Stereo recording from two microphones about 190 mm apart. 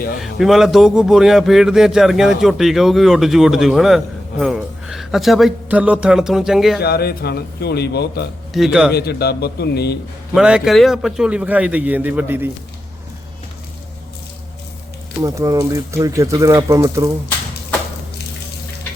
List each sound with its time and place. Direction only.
0.2 s speech: centre (ahead or behind)
6.7 s speech: 55° left (ahead or behind)
8.5 s speech: 5° right (ahead or behind)
8.9 s speech: 60° left (ahead or behind)
10.3 s speech: 5° right (ahead or behind)
15.2 s speech: 20° right (ahead or behind)